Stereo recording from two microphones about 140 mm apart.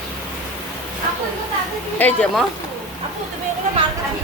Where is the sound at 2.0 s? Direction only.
10° left (ahead or behind).